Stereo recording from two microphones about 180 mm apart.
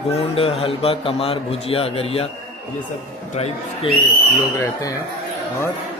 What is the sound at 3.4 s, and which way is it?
Speech, 35° left (ahead or behind).